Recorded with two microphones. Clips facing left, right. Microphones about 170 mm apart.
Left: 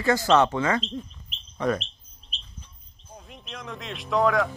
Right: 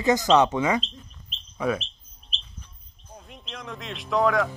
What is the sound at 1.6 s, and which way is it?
Speech, 5° right (ahead or behind).